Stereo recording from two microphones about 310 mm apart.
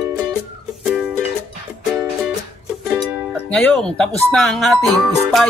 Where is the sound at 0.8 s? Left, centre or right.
Centre.